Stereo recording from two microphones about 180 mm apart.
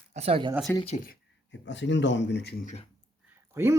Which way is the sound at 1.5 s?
85° left.